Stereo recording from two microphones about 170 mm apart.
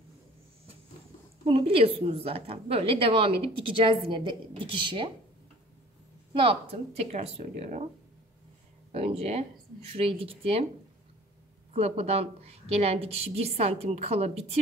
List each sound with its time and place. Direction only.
1.4 s a woman's voice: 35° right (ahead or behind)
6.3 s a woman's voice: 35° right (ahead or behind)
8.9 s a woman's voice: 35° right (ahead or behind)
11.7 s a woman's voice: 40° right (ahead or behind)